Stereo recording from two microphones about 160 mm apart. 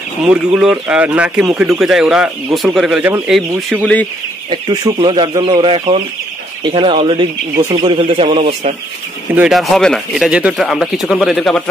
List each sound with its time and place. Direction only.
0.3 s a man's voice: 5° right (ahead or behind)
3.0 s speech: 10° right (ahead or behind)
3.8 s speech: 10° left (ahead or behind)
4.9 s speech: 35° right (ahead or behind)
9.3 s a man's voice: 5° right (ahead or behind)